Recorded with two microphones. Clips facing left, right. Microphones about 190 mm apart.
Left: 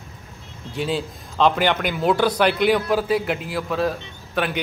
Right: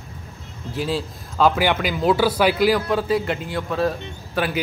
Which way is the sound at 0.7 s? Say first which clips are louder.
Even; centre (ahead or behind).